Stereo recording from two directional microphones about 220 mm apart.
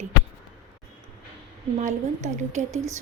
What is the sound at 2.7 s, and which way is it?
Speech, 15° right (ahead or behind).